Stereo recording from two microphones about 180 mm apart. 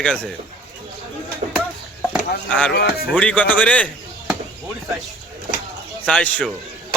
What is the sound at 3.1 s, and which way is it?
Speech, 10° left (ahead or behind).